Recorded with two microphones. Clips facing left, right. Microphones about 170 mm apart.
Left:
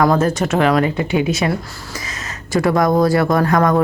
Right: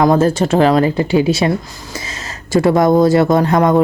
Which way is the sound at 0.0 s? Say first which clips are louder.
Right 3 dB; 25° right (ahead or behind).